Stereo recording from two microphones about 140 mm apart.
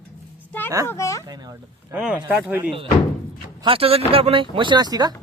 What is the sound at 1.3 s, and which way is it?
Speech, 30° right (ahead or behind).